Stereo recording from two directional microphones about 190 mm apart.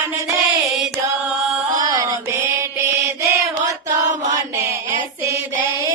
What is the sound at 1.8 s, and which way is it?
Music, 20° right (ahead or behind).